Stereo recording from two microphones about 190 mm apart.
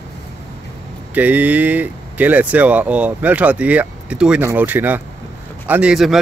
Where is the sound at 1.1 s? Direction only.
10° right (ahead or behind).